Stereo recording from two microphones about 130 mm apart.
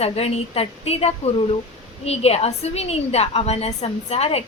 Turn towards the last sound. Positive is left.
turn(degrees=50)  # may be behind; listen again after turning